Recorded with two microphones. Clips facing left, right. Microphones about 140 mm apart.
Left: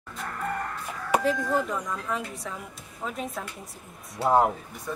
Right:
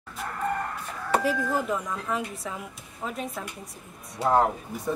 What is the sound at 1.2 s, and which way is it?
A woman's voice, 5° right (ahead or behind).